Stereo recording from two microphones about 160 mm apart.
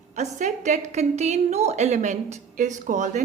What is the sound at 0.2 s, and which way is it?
A woman's voice, 45° right (ahead or behind).